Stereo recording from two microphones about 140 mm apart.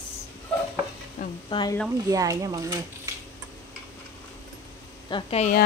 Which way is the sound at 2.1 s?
25° right (ahead or behind).